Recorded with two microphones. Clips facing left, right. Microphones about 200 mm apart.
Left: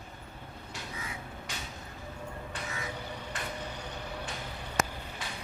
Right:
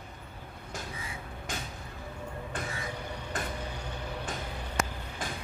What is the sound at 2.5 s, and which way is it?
Music, 50° right (ahead or behind).